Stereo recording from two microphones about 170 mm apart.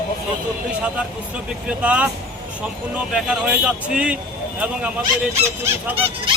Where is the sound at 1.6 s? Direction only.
10° right (ahead or behind).